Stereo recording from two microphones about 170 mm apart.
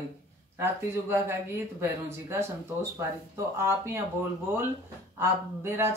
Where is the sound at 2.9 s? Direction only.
15° right (ahead or behind).